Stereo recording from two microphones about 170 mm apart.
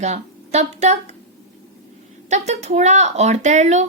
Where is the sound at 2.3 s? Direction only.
40° right (ahead or behind).